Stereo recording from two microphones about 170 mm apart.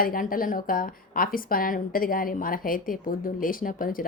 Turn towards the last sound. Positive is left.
turn(degrees=55)  # may be behind; listen again after turning